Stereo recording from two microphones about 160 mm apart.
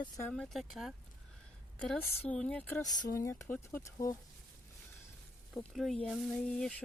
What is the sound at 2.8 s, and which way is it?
Speech, 25° left (ahead or behind).